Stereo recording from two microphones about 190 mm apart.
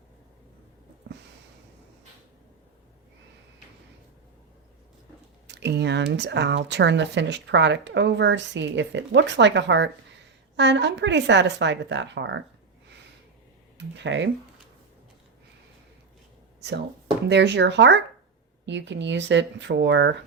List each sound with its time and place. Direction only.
5.5 s speech: 65° right (ahead or behind)
13.7 s speech: 70° right (ahead or behind)
16.6 s a sound: 60° right (ahead or behind)
17.2 s speech: 65° right (ahead or behind)